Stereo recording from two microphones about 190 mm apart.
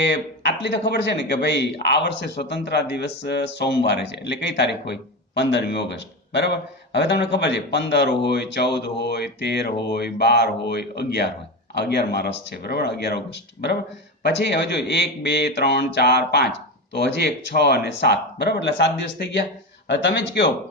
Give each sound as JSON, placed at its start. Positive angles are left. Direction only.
{"t": 0.1, "sound": "speech", "side_deg": 65}